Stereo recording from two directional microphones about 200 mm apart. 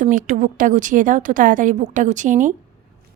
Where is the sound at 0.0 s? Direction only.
40° right (ahead or behind).